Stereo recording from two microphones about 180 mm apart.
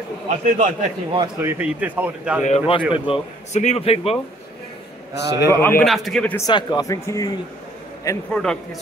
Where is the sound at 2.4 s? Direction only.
40° left (ahead or behind).